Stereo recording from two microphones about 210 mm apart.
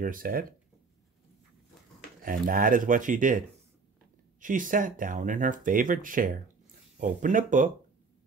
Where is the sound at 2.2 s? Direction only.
40° right (ahead or behind).